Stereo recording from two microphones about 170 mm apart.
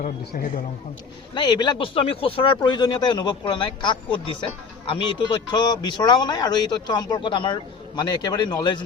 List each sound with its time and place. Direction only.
0.0 s a man's voice: 50° left (ahead or behind)
1.3 s speech: 25° left (ahead or behind)